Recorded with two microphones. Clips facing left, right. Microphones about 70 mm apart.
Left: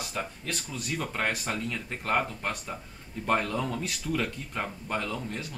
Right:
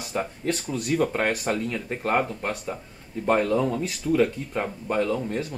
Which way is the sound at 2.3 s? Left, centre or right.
Centre.